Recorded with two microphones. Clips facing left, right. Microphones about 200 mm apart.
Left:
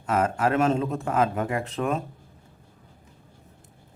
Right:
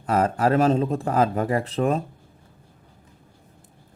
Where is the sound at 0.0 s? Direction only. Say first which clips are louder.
Right 3 dB; 35° right (ahead or behind).